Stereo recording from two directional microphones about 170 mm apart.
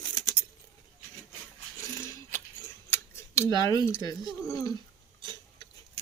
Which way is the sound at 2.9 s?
15° left (ahead or behind).